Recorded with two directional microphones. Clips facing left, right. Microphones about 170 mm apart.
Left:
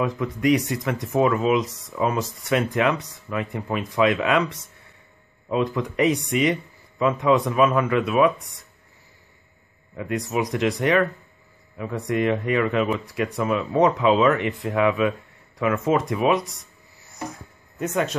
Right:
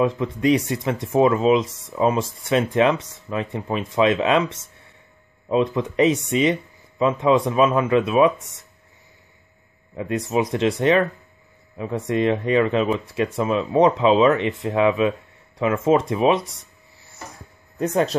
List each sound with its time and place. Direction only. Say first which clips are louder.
0.0 s speech: right 3 dB; 25° right (ahead or behind)
9.9 s speech: right 3 dB; 25° right (ahead or behind)
17.7 s speech: right 4 dB; 35° right (ahead or behind)